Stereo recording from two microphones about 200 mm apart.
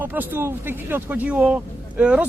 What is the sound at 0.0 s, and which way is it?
A man's voice, 10° right (ahead or behind).